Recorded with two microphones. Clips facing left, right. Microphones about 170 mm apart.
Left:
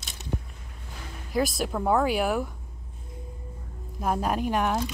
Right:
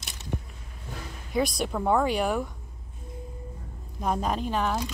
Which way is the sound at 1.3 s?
Centre (ahead or behind).